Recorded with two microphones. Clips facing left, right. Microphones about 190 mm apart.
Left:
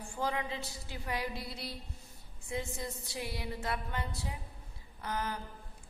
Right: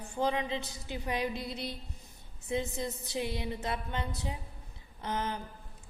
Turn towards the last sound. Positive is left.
turn(degrees=-20)  # may be behind; listen again after turning